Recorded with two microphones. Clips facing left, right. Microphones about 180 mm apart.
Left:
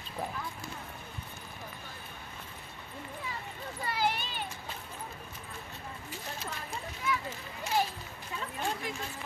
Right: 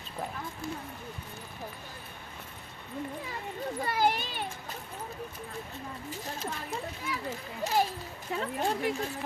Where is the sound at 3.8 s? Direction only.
45° right (ahead or behind).